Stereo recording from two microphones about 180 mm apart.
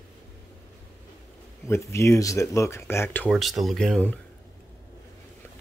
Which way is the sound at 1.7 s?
15° left (ahead or behind).